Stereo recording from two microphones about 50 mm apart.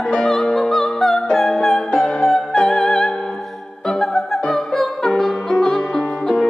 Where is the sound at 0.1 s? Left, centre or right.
Centre.